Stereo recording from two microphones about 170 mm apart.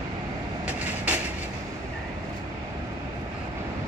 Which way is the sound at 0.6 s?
10° right (ahead or behind).